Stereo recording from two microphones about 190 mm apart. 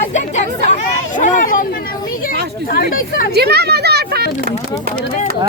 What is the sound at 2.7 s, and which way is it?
Speech, 50° left (ahead or behind).